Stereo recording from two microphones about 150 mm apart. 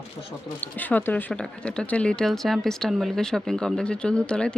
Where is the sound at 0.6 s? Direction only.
10° left (ahead or behind).